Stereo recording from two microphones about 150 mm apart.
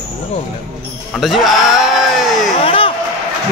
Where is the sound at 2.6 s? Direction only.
35° left (ahead or behind).